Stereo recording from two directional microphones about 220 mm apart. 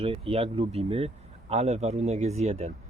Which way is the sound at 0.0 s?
25° right (ahead or behind).